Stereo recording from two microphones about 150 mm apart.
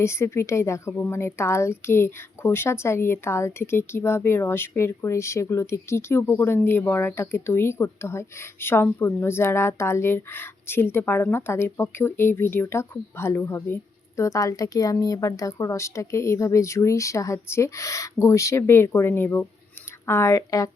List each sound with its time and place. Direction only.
0.0 s a woman's voice: 20° left (ahead or behind)